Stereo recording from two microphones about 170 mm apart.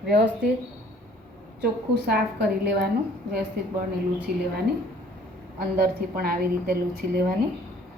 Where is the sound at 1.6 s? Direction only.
70° right (ahead or behind).